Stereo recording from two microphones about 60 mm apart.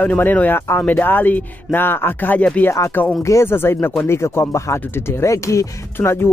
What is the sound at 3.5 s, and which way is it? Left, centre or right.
Speech, left.